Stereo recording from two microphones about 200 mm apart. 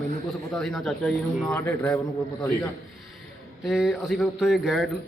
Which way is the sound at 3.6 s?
Centre (ahead or behind).